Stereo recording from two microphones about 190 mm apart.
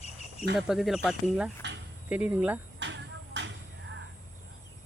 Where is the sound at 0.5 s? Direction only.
Centre (ahead or behind).